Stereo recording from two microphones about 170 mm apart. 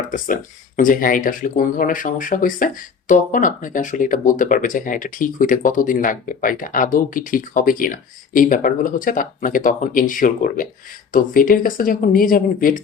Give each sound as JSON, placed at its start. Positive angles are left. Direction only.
{"t": 0.8, "sound": "speech", "side_deg": 55}